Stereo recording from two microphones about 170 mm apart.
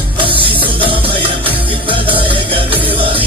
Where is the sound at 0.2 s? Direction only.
30° right (ahead or behind).